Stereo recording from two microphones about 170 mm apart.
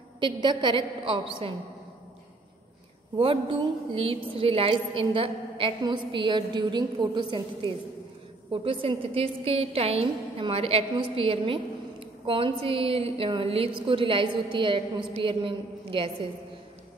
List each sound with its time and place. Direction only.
0.2 s a woman's voice: 30° right (ahead or behind)
3.2 s a woman's voice: 30° right (ahead or behind)